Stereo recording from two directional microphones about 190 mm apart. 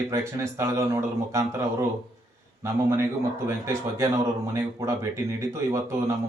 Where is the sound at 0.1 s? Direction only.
15° right (ahead or behind).